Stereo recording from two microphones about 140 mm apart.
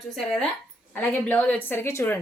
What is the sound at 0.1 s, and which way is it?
A woman's voice, centre (ahead or behind).